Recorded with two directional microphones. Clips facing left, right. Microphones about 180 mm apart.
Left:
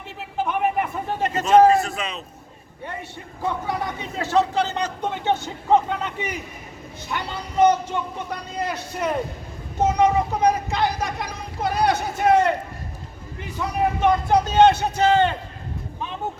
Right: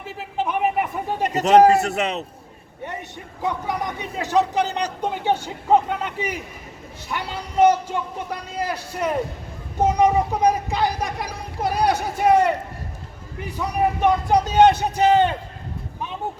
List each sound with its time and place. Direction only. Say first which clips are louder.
0.0 s a sound: right 1 dB; centre (ahead or behind)
1.7 s a man's voice: right 2 dB; 70° right (ahead or behind)
3.4 s a man's voice: even; 15° right (ahead or behind)
13.6 s a man's voice: right 1 dB; 10° right (ahead or behind)